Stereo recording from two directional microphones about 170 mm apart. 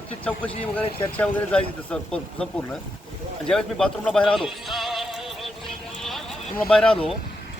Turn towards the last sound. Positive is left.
turn(degrees=5)  # may be behind; listen again after turning